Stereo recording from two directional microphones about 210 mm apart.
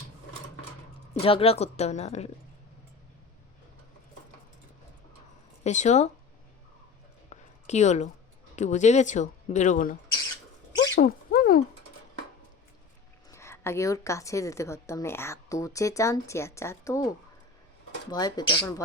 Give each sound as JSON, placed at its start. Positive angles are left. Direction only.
{"t": 1.2, "sound": "speech", "side_deg": 25}
{"t": 5.6, "sound": "speech", "side_deg": 35}
{"t": 7.3, "sound": "a sound", "side_deg": 35}
{"t": 8.5, "sound": "speech", "side_deg": 35}
{"t": 10.9, "sound": "a sound", "side_deg": 40}
{"t": 13.3, "sound": "a woman's voice", "side_deg": 10}
{"t": 18.1, "sound": "speech", "side_deg": 20}